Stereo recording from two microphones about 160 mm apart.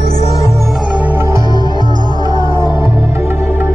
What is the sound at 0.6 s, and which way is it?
Music, centre (ahead or behind).